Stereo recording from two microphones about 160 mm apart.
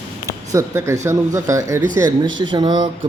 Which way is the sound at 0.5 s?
20° right (ahead or behind).